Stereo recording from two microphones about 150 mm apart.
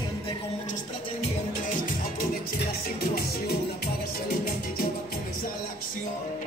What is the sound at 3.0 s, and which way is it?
Music, 90° left.